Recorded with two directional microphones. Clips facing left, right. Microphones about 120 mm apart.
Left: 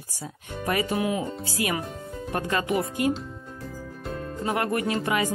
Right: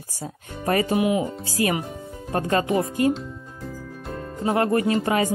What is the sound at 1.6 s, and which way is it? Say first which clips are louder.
Speech: right 4 dB; 35° right (ahead or behind).